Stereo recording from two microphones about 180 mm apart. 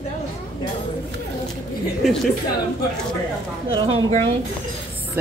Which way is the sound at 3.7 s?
30° right (ahead or behind).